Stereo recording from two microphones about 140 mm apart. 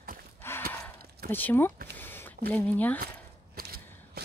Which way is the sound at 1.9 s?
15° left (ahead or behind).